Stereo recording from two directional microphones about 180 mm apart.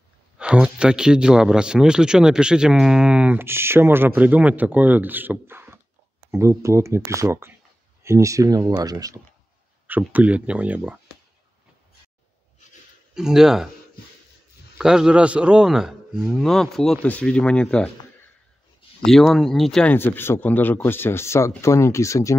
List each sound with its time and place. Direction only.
0.4 s speech: 5° right (ahead or behind)
9.8 s speech: 10° right (ahead or behind)
13.1 s speech: 5° right (ahead or behind)
14.8 s speech: 5° right (ahead or behind)
19.0 s a man's voice: centre (ahead or behind)